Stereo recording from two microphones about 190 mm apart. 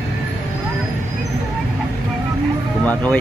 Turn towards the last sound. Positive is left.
turn(degrees=10)  # may be behind; listen again after turning